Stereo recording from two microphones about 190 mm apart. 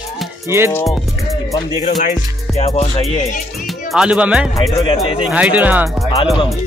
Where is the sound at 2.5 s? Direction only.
35° left (ahead or behind).